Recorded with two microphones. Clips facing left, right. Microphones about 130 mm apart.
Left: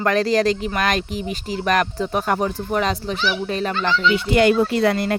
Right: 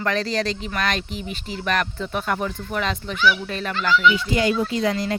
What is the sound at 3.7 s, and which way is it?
Speech, 25° left (ahead or behind).